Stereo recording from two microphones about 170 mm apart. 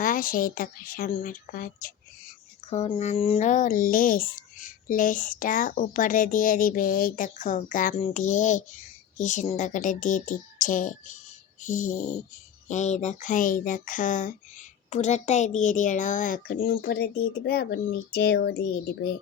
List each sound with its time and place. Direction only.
0.0 s a child's voice: 55° left (ahead or behind)
2.6 s speech: 35° left (ahead or behind); by 10.9 s 50° left (ahead or behind)
11.6 s a sound: 50° left (ahead or behind)
12.6 s a child's voice: 45° left (ahead or behind); by 18.6 s 70° left (ahead or behind)